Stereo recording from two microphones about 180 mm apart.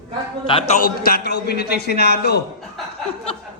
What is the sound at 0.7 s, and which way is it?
A man's voice, 50° left (ahead or behind).